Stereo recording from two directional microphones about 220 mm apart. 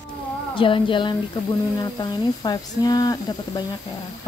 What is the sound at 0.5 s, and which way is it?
Speech, 25° left (ahead or behind).